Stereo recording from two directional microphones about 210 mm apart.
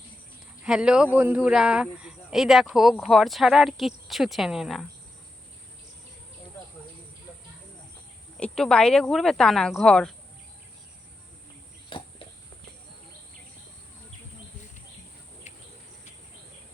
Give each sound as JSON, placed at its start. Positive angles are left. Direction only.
{"t": 0.6, "sound": "speech", "side_deg": -5}
{"t": 8.4, "sound": "speech", "side_deg": 5}
{"t": 11.9, "sound": "cricket", "side_deg": 25}
{"t": 15.5, "sound": "cricket", "side_deg": 35}